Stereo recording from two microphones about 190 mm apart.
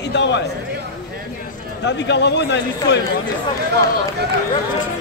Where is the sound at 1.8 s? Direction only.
65° left (ahead or behind).